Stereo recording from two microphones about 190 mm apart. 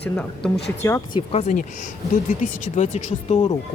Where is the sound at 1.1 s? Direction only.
30° left (ahead or behind).